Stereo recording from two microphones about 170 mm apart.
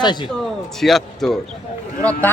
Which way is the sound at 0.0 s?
25° left (ahead or behind).